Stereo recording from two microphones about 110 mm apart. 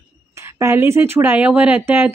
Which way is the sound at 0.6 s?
25° right (ahead or behind).